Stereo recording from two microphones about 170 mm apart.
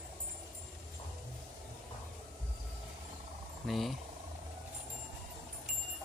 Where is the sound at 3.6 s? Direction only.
Centre (ahead or behind).